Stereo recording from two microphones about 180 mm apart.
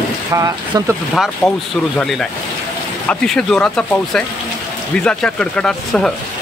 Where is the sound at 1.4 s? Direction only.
15° left (ahead or behind).